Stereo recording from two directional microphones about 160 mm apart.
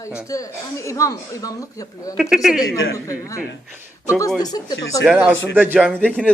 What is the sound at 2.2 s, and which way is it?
Speech, 5° right (ahead or behind).